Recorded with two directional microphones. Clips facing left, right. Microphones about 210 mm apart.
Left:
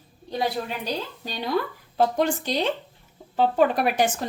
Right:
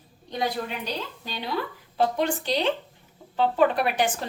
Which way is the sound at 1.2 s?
45° left (ahead or behind).